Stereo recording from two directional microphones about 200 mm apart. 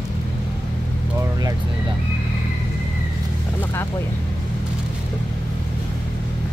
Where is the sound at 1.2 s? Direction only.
20° right (ahead or behind).